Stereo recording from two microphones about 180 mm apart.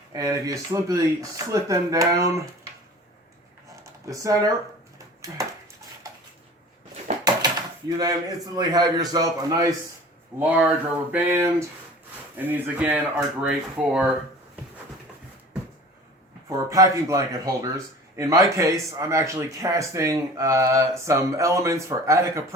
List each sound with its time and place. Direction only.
0.1 s speech: 20° right (ahead or behind)
4.0 s speech: 20° right (ahead or behind)
6.0 s a sound: 20° right (ahead or behind)
7.3 s speech: 20° right (ahead or behind)
11.1 s speech: 10° right (ahead or behind)
16.5 s speech: 20° right (ahead or behind)